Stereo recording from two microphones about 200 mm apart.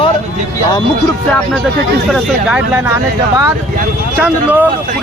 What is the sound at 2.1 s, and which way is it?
Speech, 5° right (ahead or behind).